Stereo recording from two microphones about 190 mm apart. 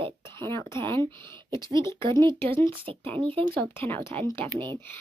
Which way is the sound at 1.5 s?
20° right (ahead or behind).